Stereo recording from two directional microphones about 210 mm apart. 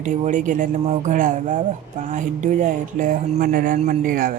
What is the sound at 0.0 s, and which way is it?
Speech, 35° right (ahead or behind).